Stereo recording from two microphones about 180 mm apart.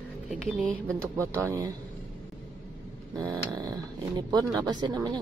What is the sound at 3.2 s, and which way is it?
Snoring, 20° right (ahead or behind).